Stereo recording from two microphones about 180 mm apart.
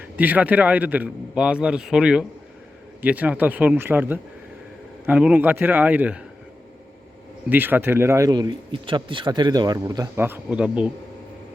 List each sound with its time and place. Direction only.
0.2 s a man's voice: 10° right (ahead or behind)
7.5 s speech: 10° right (ahead or behind)